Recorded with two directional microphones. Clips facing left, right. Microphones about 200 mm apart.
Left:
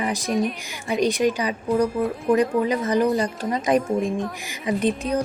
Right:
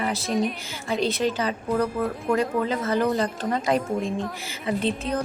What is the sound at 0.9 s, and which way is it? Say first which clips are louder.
Speech: left 4 dB; 15° left (ahead or behind).